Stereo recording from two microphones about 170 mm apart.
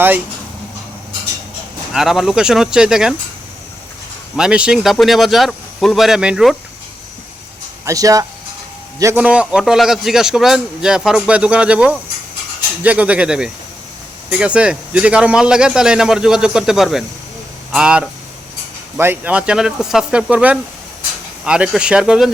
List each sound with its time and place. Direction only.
1.9 s a man's voice: centre (ahead or behind)
4.4 s a man's voice: 5° right (ahead or behind)
7.9 s speech: 20° right (ahead or behind)
9.1 s a man's voice: 5° right (ahead or behind)